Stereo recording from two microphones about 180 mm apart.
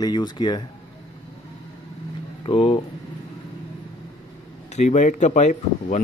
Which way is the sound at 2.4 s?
30° left (ahead or behind).